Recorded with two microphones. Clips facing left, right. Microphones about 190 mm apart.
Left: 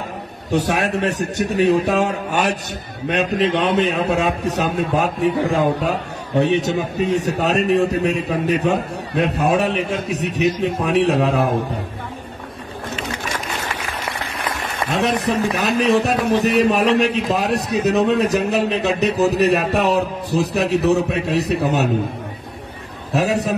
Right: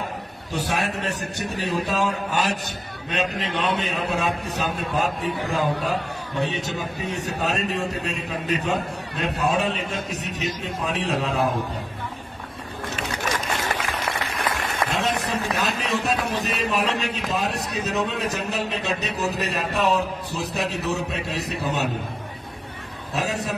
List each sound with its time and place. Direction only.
0.5 s a man's voice: 65° left (ahead or behind)
15.2 s a man's voice: 70° left (ahead or behind)
23.1 s a man's voice: 70° left (ahead or behind)